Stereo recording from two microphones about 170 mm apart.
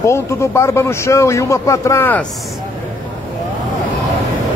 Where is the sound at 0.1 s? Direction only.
15° left (ahead or behind).